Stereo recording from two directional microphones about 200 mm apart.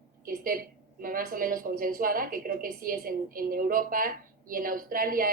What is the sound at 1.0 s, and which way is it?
Speech, 45° right (ahead or behind).